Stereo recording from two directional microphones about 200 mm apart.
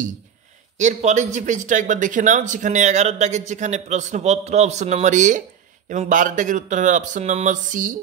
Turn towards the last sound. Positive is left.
turn(degrees=-40)  # may be behind; listen again after turning